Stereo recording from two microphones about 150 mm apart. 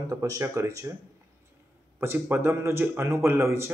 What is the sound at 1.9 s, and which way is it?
Speech, 15° right (ahead or behind).